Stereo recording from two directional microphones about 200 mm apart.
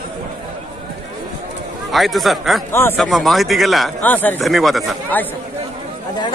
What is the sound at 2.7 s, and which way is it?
Speech, 10° left (ahead or behind).